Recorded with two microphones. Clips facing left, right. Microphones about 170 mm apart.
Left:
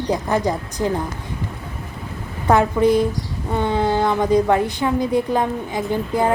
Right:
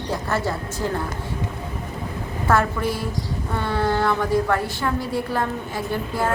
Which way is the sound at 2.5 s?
20° left (ahead or behind).